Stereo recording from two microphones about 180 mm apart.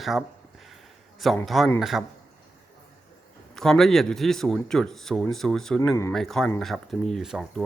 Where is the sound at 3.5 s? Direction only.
Centre (ahead or behind).